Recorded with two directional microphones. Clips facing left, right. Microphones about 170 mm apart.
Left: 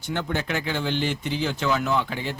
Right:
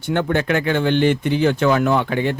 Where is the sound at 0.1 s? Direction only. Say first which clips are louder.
Right 8 dB; 60° right (ahead or behind).